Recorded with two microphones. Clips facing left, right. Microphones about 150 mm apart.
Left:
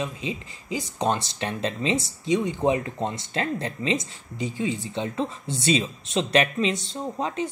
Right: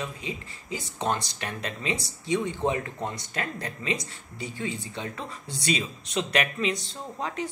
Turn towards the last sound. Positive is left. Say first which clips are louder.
# left 5 dB
turn(degrees=20)  # may be behind; listen again after turning